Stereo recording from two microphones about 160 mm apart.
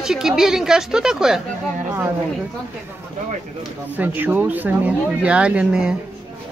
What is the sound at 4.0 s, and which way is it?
Speech, 10° right (ahead or behind).